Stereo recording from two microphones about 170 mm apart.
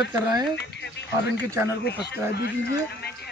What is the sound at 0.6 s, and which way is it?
Speech, 90° left.